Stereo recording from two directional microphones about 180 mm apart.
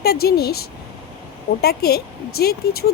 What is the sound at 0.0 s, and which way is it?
Speech, 60° left (ahead or behind).